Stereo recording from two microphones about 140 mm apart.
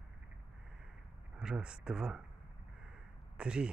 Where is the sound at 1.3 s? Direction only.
5° right (ahead or behind).